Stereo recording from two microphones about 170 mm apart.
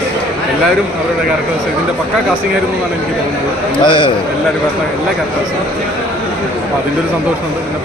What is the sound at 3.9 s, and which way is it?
Speech, 30° left (ahead or behind).